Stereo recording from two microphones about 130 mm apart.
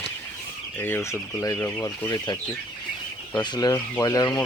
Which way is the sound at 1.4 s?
25° left (ahead or behind).